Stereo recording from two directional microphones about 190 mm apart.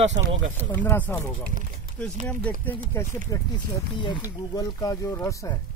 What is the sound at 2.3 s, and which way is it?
Speech, 10° left (ahead or behind).